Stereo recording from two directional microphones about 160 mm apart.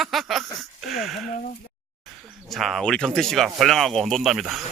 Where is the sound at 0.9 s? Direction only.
Centre (ahead or behind).